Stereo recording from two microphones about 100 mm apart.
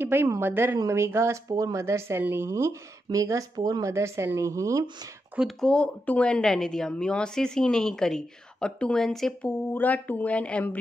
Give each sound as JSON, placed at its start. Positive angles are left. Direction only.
{"t": 0.0, "sound": "a woman's voice", "side_deg": -20}
{"t": 5.6, "sound": "a woman's voice", "side_deg": 10}
{"t": 9.8, "sound": "a woman's voice", "side_deg": 15}